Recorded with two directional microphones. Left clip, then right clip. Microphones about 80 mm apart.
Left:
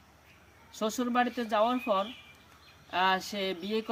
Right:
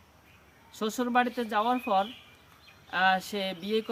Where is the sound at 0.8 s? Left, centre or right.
Centre.